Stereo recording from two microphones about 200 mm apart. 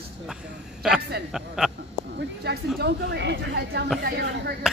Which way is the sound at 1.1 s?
50° right (ahead or behind).